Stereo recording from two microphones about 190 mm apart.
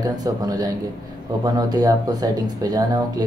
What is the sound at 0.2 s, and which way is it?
Speech, 20° right (ahead or behind).